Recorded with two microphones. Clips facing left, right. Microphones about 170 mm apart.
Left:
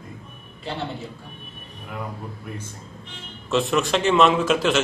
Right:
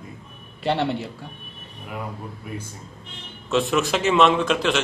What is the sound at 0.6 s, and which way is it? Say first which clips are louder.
Speech: right 8 dB; 75° right (ahead or behind).